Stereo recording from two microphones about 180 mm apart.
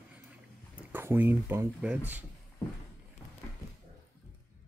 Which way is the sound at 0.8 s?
10° right (ahead or behind).